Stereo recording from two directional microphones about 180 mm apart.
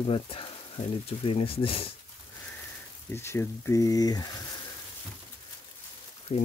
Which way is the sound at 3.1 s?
15° left (ahead or behind).